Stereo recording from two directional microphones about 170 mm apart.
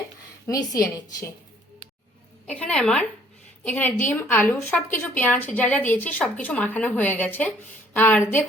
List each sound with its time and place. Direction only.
0.4 s a woman's voice: 20° left (ahead or behind)
2.5 s a woman's voice: 5° left (ahead or behind)